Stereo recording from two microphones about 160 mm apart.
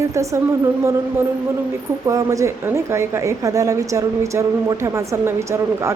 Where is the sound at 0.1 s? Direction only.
20° right (ahead or behind).